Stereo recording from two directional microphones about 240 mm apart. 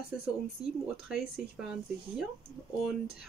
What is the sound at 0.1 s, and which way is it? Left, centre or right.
Speech, centre.